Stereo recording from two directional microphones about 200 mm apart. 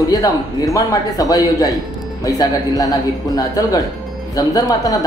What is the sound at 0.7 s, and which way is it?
Speech, 15° left (ahead or behind).